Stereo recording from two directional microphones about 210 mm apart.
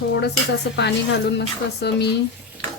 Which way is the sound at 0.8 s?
55° left (ahead or behind).